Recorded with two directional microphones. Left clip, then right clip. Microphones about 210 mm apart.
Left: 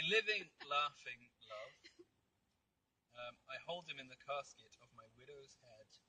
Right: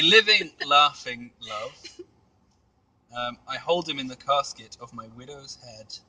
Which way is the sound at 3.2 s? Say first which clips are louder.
Right 19 dB; 25° right (ahead or behind).